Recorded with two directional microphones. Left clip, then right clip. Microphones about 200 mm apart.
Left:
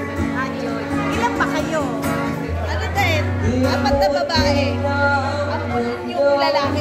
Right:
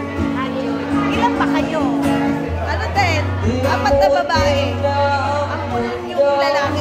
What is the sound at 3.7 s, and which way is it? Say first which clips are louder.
Music: right 4 dB; 35° right (ahead or behind).